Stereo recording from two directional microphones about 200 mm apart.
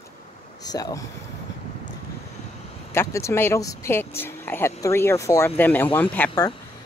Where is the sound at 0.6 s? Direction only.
20° left (ahead or behind).